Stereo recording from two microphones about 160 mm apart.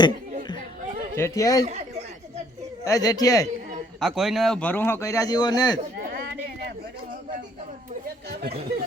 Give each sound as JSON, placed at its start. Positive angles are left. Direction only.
{"t": 1.1, "sound": "speech", "side_deg": 20}
{"t": 2.8, "sound": "speech", "side_deg": 20}
{"t": 4.0, "sound": "a man's voice", "side_deg": 0}
{"t": 6.0, "sound": "a sound", "side_deg": -65}
{"t": 8.0, "sound": "speech", "side_deg": -75}